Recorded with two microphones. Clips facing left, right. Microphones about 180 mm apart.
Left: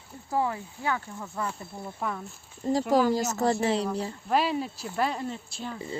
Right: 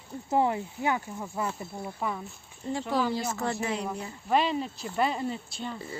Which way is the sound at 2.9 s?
45° left (ahead or behind).